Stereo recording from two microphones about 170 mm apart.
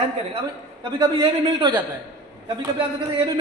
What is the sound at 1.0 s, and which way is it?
Speech, 25° right (ahead or behind).